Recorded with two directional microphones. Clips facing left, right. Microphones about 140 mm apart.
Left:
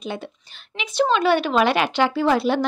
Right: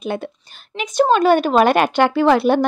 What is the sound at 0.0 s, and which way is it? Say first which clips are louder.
A woman's voice: right 6 dB; 55° right (ahead or behind).